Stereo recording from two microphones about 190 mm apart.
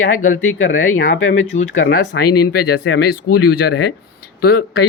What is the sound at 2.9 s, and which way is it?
Speech, 90° left.